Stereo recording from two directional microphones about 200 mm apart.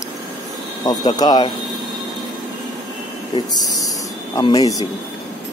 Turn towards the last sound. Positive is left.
turn(degrees=20)  # may be behind; listen again after turning